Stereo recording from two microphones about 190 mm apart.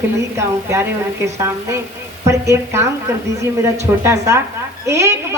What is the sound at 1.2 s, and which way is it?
Speech, 15° right (ahead or behind).